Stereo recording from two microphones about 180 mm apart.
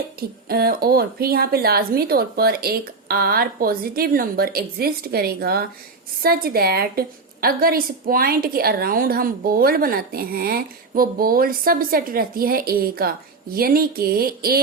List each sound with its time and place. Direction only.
0.2 s a woman's voice: 60° right (ahead or behind)